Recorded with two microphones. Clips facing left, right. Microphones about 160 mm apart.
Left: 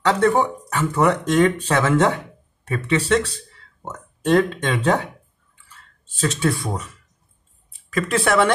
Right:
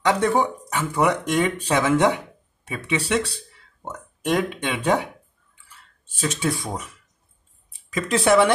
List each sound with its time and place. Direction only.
0.0 s speech: 15° right (ahead or behind)
6.2 s speech: 15° right (ahead or behind)
7.9 s speech: 20° right (ahead or behind)